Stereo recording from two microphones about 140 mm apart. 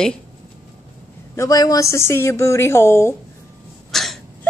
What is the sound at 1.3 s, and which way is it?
A woman's voice, 20° left (ahead or behind).